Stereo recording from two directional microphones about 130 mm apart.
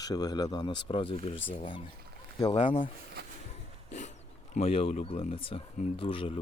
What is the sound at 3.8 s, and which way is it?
Dog, 65° left (ahead or behind).